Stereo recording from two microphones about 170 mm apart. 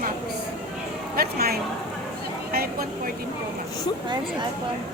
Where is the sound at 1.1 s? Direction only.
65° right (ahead or behind).